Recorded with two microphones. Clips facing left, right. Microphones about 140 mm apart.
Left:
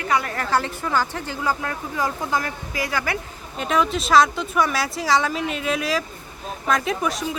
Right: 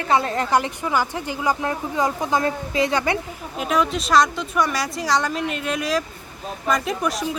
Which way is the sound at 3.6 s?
Centre (ahead or behind).